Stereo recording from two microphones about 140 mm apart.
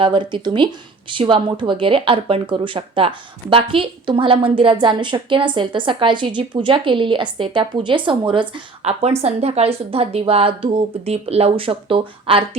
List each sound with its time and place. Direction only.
0.0 s speech: 35° right (ahead or behind)